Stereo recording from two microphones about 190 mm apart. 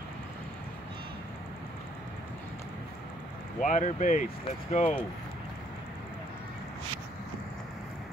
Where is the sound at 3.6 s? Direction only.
40° left (ahead or behind).